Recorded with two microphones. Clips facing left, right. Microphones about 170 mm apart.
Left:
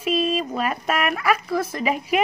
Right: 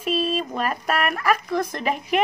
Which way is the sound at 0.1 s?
40° right (ahead or behind).